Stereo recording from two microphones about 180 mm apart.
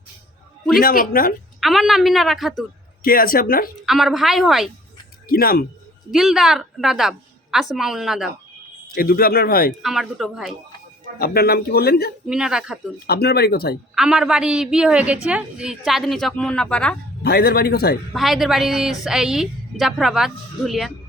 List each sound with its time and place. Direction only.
0.8 s speech: 55° left (ahead or behind)
1.6 s a woman's voice: centre (ahead or behind)
3.0 s speech: 55° left (ahead or behind)
3.8 s a woman's voice: centre (ahead or behind)
5.3 s speech: 55° left (ahead or behind)
6.1 s a woman's voice: centre (ahead or behind)
9.0 s speech: 55° left (ahead or behind)
9.8 s a woman's voice: centre (ahead or behind)
11.2 s speech: 60° left (ahead or behind)
12.3 s a woman's voice: 5° right (ahead or behind)
13.1 s speech: 60° left (ahead or behind)
13.9 s a woman's voice: 5° right (ahead or behind)
17.2 s speech: 60° left (ahead or behind)
18.1 s a woman's voice: centre (ahead or behind)